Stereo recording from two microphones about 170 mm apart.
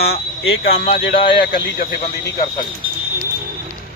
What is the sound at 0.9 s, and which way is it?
Speech, 30° left (ahead or behind).